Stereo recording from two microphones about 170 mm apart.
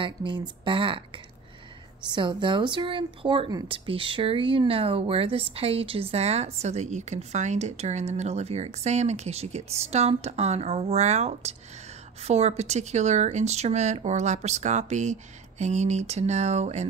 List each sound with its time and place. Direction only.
0.0 s speech: 30° right (ahead or behind)